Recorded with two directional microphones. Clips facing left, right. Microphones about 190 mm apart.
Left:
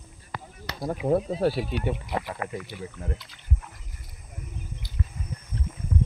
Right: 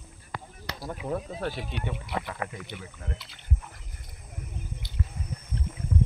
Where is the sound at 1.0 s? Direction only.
35° left (ahead or behind).